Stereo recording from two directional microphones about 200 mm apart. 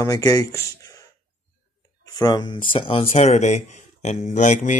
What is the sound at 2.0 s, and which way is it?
Speech, 20° left (ahead or behind).